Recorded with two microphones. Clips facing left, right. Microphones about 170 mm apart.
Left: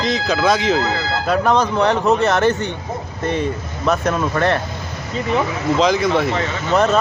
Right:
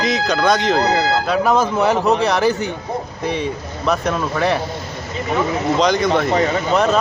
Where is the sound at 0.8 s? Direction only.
40° right (ahead or behind).